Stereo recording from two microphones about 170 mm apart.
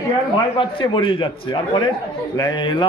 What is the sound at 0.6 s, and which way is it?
Speech, 30° left (ahead or behind).